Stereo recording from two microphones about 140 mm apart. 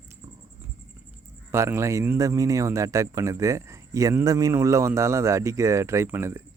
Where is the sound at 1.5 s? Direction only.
20° right (ahead or behind).